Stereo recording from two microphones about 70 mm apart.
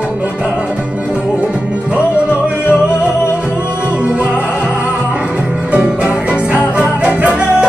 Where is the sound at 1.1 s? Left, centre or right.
Centre.